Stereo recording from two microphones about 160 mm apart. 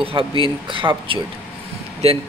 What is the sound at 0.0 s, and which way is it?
Speech, 35° right (ahead or behind).